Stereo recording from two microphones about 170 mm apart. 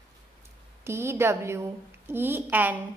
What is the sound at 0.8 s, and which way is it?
A woman's voice, 15° right (ahead or behind).